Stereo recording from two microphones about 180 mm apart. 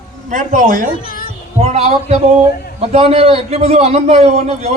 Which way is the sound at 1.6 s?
35° right (ahead or behind).